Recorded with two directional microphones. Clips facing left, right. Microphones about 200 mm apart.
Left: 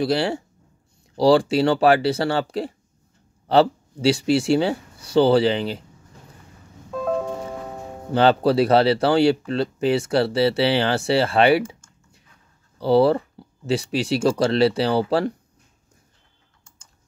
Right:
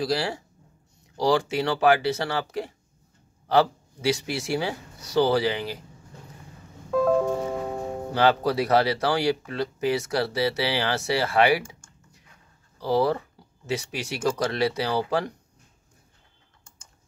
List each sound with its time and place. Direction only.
0.0 s speech: 25° left (ahead or behind)
8.1 s speech: 30° left (ahead or behind)
12.7 s speech: 30° left (ahead or behind)